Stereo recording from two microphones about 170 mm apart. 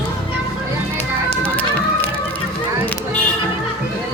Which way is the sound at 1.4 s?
10° left (ahead or behind).